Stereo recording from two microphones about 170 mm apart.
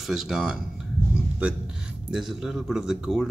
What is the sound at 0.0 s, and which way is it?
Speech, centre (ahead or behind).